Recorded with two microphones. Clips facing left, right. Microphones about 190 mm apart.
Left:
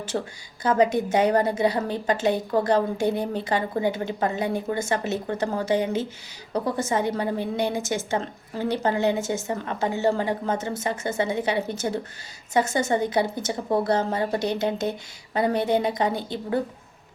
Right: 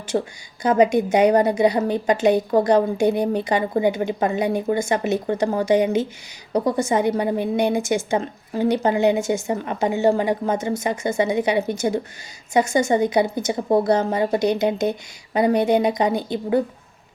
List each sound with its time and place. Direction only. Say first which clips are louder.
0.1 s speech: right 6 dB; 25° right (ahead or behind)
0.6 s a woman's voice: right 4 dB; 15° right (ahead or behind)